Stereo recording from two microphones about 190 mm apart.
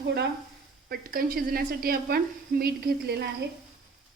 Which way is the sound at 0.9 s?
50° right (ahead or behind).